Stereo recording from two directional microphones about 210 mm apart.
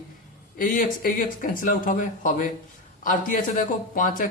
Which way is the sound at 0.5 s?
40° left (ahead or behind).